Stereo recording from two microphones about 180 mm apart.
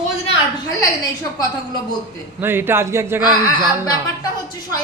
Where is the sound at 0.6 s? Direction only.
20° left (ahead or behind).